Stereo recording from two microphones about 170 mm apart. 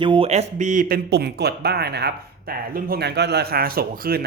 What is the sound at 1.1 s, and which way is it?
Speech, 75° right (ahead or behind).